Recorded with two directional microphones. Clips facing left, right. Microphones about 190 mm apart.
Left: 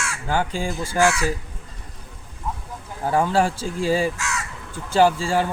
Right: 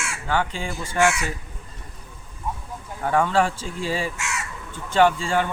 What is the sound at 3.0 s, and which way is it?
A man's voice, 35° left (ahead or behind).